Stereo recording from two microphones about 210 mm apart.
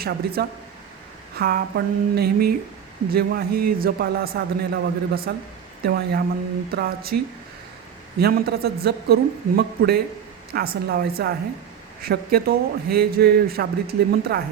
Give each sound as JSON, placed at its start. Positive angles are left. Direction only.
{"t": 0.0, "sound": "a man's voice", "side_deg": -45}
{"t": 8.2, "sound": "a man's voice", "side_deg": -50}